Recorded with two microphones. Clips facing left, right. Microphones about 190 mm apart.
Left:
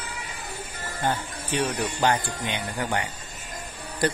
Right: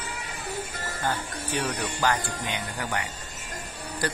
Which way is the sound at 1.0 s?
20° left (ahead or behind).